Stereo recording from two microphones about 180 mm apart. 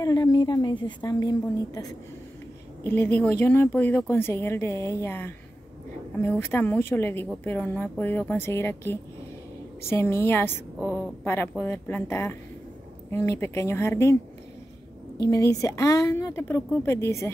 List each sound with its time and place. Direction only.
0.0 s a woman's voice: 20° left (ahead or behind)
15.2 s a woman's voice: 20° left (ahead or behind)